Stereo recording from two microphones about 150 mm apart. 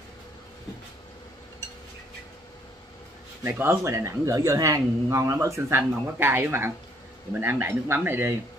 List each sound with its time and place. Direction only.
3.4 s speech: 15° right (ahead or behind)